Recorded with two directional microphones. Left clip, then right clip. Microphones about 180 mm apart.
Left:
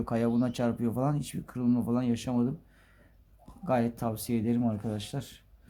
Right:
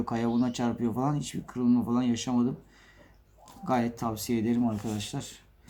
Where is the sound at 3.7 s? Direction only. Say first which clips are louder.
Even; 55° left (ahead or behind).